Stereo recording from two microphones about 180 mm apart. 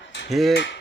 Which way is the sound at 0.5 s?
75° left (ahead or behind).